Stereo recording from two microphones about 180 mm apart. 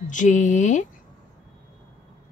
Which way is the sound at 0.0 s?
45° left (ahead or behind).